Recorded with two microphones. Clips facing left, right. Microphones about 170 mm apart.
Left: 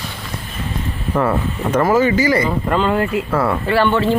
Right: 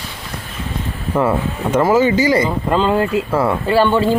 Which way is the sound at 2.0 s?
25° right (ahead or behind).